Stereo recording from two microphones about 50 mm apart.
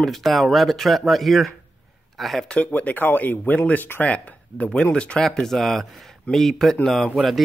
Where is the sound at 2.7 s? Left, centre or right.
Left.